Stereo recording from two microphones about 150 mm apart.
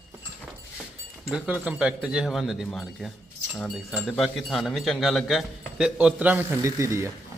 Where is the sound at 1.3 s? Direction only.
5° right (ahead or behind).